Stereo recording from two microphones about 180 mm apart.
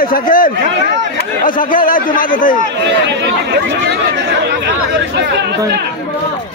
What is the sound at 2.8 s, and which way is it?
Speech, 75° right (ahead or behind).